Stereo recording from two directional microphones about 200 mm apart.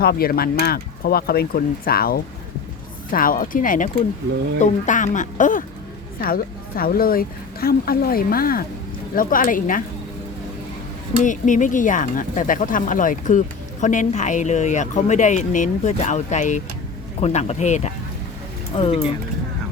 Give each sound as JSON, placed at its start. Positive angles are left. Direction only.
{"t": 0.0, "sound": "a woman's voice", "side_deg": 50}
{"t": 11.2, "sound": "speech", "side_deg": 40}